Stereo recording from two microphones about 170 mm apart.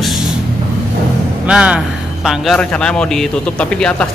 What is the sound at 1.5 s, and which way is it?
A man's voice, 5° right (ahead or behind).